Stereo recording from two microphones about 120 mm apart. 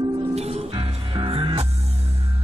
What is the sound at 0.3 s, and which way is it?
Music, 60° right (ahead or behind).